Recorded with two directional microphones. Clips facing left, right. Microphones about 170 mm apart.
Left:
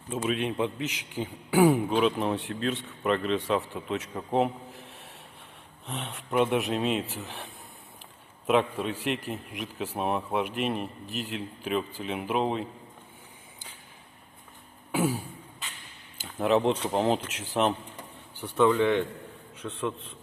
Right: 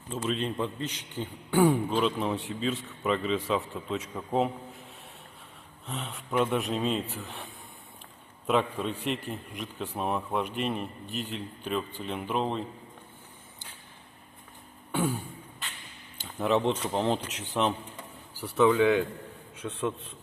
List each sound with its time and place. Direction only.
0.1 s a man's voice: 5° left (ahead or behind)
0.8 s a man's voice: 90° left
1.1 s a man's voice: 10° left (ahead or behind)
16.1 s a sound: centre (ahead or behind)
16.9 s a man's voice: 5° left (ahead or behind)